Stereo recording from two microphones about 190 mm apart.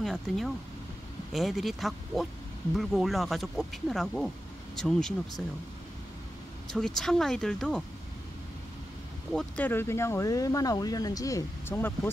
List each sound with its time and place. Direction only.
0.0 s speech: centre (ahead or behind)
6.7 s speech: centre (ahead or behind)
9.3 s speech: 5° left (ahead or behind)